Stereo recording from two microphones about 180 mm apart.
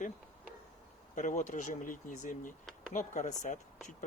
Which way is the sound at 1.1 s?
45° left (ahead or behind).